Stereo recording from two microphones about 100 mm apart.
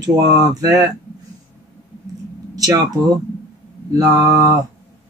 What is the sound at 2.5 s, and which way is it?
Speech, 35° right (ahead or behind).